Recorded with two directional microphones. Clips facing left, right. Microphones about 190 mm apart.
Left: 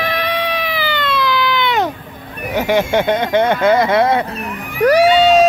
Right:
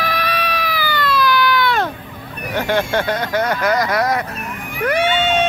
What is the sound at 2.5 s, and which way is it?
Speech, 15° left (ahead or behind).